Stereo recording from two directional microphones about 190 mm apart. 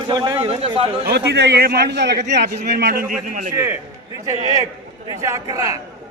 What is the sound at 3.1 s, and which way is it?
Speech, 45° right (ahead or behind).